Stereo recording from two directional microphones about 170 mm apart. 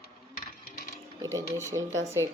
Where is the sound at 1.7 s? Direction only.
20° right (ahead or behind).